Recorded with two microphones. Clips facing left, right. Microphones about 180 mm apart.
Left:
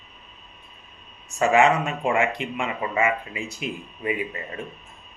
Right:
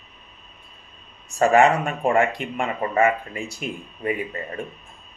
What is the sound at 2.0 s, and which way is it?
Speech, 40° right (ahead or behind).